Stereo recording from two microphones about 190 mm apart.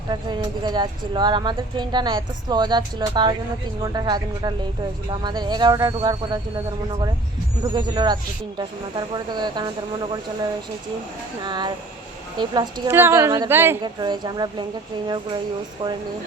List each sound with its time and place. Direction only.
0.1 s speech: 25° right (ahead or behind)
7.7 s speech: 25° right (ahead or behind)
11.4 s a woman's voice: 25° right (ahead or behind)
13.8 s speech: 25° right (ahead or behind)